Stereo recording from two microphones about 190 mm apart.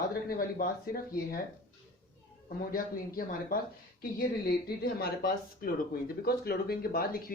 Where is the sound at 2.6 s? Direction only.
50° left (ahead or behind).